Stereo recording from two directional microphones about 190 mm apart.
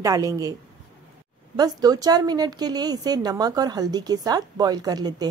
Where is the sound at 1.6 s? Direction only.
20° right (ahead or behind).